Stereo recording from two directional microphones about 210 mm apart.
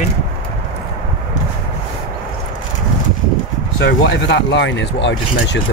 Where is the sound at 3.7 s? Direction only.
55° left (ahead or behind).